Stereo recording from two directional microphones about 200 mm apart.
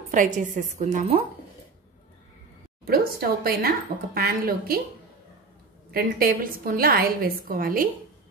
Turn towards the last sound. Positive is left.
turn(degrees=-45)  # may be behind; listen again after turning